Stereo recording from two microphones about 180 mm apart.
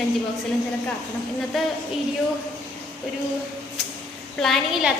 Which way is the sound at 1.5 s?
Centre (ahead or behind).